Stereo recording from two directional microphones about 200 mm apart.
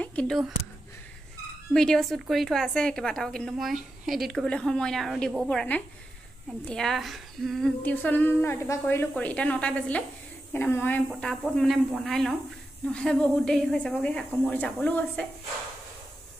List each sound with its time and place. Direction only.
0.0 s speech: 5° left (ahead or behind)
1.7 s a woman's voice: centre (ahead or behind)